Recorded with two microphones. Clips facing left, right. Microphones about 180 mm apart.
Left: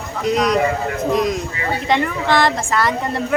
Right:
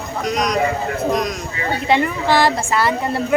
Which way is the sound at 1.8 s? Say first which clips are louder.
Right 1 dB; 5° right (ahead or behind).